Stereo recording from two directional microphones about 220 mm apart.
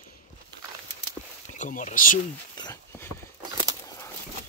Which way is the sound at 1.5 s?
35° left (ahead or behind).